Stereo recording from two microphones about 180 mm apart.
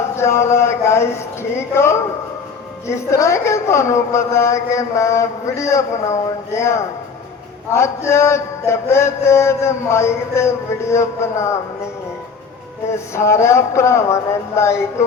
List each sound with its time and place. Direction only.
0.2 s a man's voice: 15° left (ahead or behind)
13.1 s a man's voice: 15° left (ahead or behind)